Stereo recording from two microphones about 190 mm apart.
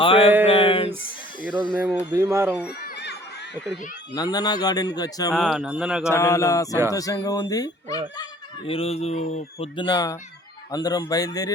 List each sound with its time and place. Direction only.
0.0 s a sound: 25° left (ahead or behind)
1.9 s speech: 10° right (ahead or behind)
2.8 s chatter: 60° left (ahead or behind)
4.1 s speech: 20° left (ahead or behind)
5.3 s speech: centre (ahead or behind)
6.1 s mantra: 15° left (ahead or behind)
6.9 s speech: 20° left (ahead or behind)
8.2 s speech: 30° left (ahead or behind)